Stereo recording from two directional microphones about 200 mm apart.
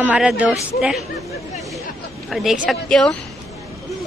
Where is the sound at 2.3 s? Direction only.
Centre (ahead or behind).